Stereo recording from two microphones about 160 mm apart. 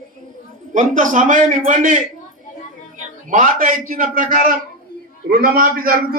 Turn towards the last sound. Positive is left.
turn(degrees=-65)  # may be behind; listen again after turning